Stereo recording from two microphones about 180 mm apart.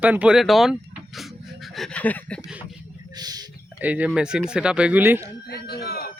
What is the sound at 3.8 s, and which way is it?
Speech, 10° right (ahead or behind).